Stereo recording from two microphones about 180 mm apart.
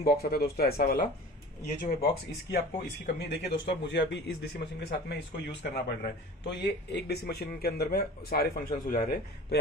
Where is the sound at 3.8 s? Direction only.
75° left (ahead or behind); by 8.7 s 60° left (ahead or behind).